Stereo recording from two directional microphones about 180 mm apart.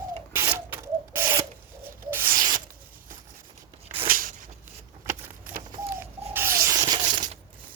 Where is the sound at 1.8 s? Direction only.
10° right (ahead or behind).